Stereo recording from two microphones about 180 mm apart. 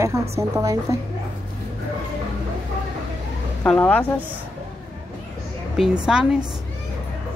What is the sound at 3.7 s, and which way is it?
Speech, 5° left (ahead or behind).